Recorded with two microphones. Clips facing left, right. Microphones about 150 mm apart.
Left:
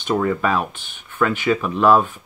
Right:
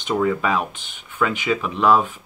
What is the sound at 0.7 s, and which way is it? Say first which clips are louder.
Speech: left 2 dB; 15° right (ahead or behind).